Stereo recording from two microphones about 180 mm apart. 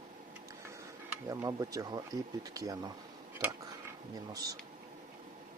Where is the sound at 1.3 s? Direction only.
20° right (ahead or behind).